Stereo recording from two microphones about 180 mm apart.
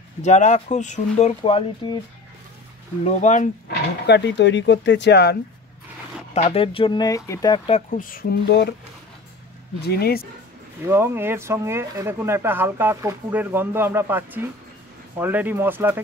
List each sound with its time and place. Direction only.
0.2 s speech: 40° left (ahead or behind)
3.1 s speech: 40° left (ahead or behind)
4.0 s speech: 70° left (ahead or behind)
6.3 s speech: 35° left (ahead or behind)
7.9 s speech: 50° left (ahead or behind); by 8.7 s 70° left (ahead or behind)
9.8 s speech: 60° left (ahead or behind)
10.9 s speech: 15° right (ahead or behind)